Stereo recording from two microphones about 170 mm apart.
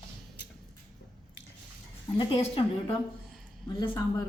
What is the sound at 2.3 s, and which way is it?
Speech, 30° left (ahead or behind).